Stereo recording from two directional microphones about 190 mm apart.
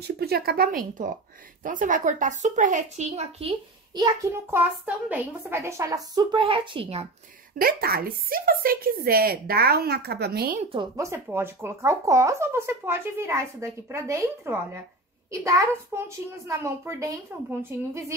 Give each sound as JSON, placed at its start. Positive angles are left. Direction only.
{"t": 0.0, "sound": "a woman's voice", "side_deg": -55}
{"t": 4.0, "sound": "a child's voice", "side_deg": -10}
{"t": 7.6, "sound": "speech", "side_deg": -50}
{"t": 10.6, "sound": "a child's voice", "side_deg": -30}
{"t": 11.0, "sound": "speech", "side_deg": -15}